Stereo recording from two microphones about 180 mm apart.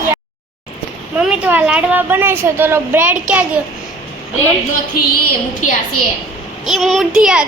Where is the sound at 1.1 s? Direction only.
5° right (ahead or behind).